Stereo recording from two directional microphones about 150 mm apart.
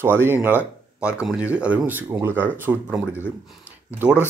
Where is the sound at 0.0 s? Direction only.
15° right (ahead or behind).